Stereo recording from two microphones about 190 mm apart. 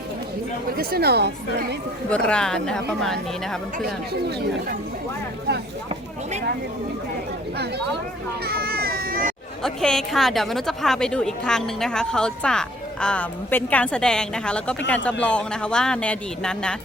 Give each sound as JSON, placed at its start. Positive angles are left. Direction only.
{"t": 0.8, "sound": "speech", "side_deg": -55}
{"t": 2.0, "sound": "a woman's voice", "side_deg": 5}
{"t": 8.4, "sound": "baby cry", "side_deg": -55}
{"t": 9.6, "sound": "a woman's voice", "side_deg": 5}